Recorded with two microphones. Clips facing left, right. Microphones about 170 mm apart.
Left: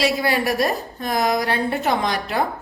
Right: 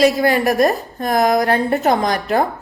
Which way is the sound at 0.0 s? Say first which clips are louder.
Right 6 dB; 45° right (ahead or behind).